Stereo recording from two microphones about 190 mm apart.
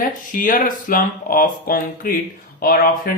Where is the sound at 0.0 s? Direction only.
45° left (ahead or behind).